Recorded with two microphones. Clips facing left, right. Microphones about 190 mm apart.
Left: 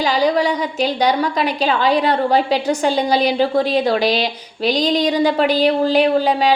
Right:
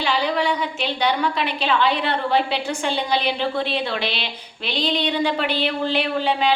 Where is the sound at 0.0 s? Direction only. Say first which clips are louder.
Left 6 dB; 40° left (ahead or behind).